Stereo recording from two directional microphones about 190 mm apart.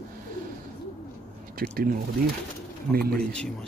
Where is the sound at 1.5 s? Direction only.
55° right (ahead or behind).